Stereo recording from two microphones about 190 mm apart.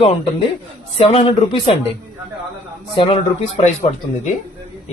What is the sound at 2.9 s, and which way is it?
Speech, 25° left (ahead or behind).